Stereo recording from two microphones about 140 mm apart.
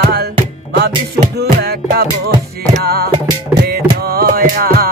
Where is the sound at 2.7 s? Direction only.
90° right.